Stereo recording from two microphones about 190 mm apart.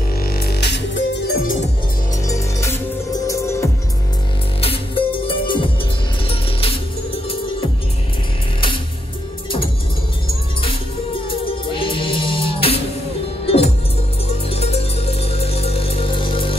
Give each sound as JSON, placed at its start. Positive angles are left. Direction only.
{"t": 0.2, "sound": "music", "side_deg": 55}
{"t": 2.2, "sound": "music", "side_deg": 15}
{"t": 4.6, "sound": "music", "side_deg": 30}
{"t": 11.2, "sound": "music", "side_deg": 25}
{"t": 14.5, "sound": "music", "side_deg": 30}